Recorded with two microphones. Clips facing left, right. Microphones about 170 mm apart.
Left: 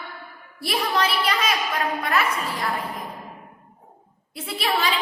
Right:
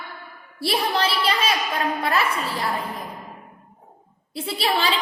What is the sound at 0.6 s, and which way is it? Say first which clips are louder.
A woman's voice: right 1 dB; 30° right (ahead or behind).